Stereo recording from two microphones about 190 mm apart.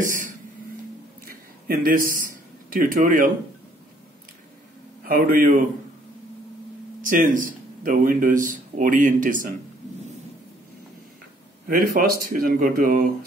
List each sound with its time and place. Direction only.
0.0 s a sound: 45° right (ahead or behind)
2.7 s speech: 45° right (ahead or behind)
5.0 s speech: 50° right (ahead or behind)
7.0 s speech: 45° right (ahead or behind)
11.6 s speech: 50° right (ahead or behind)